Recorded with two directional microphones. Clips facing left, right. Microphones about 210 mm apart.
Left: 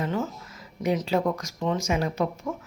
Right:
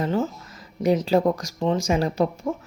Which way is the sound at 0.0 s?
35° right (ahead or behind).